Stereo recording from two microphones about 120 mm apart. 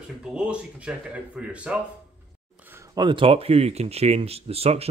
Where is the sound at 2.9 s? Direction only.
40° right (ahead or behind).